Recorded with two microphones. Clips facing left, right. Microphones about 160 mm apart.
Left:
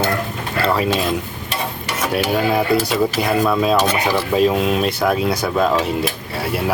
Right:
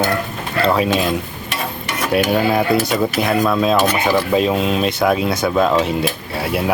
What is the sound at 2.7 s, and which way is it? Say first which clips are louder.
Speech: right 1 dB; 30° left (ahead or behind).